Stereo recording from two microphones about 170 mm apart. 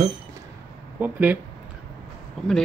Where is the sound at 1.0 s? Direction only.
10° right (ahead or behind).